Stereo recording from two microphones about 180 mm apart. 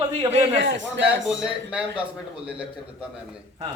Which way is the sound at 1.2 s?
5° right (ahead or behind).